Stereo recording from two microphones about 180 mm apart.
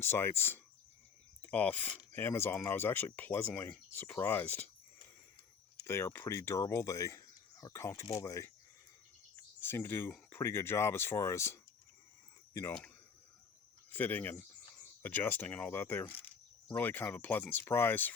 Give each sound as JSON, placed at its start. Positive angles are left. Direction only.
{"t": 0.0, "sound": "speech", "side_deg": 15}
{"t": 5.8, "sound": "speech", "side_deg": 15}
{"t": 13.9, "sound": "speech", "side_deg": 10}